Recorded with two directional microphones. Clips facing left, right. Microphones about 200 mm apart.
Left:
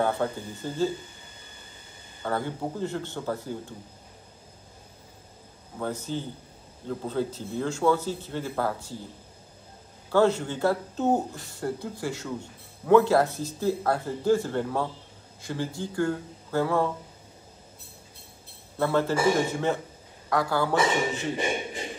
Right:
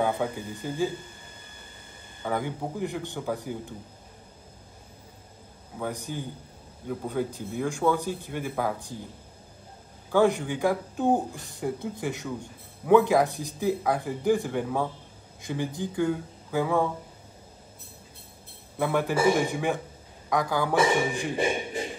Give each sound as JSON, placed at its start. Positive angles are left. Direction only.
{"t": 0.0, "sound": "speech", "side_deg": -15}
{"t": 2.2, "sound": "speech", "side_deg": -15}
{"t": 5.8, "sound": "speech", "side_deg": -15}
{"t": 10.1, "sound": "speech", "side_deg": -15}
{"t": 18.8, "sound": "speech", "side_deg": -15}